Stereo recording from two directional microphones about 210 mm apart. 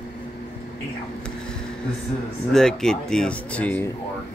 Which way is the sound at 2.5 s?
5° left (ahead or behind).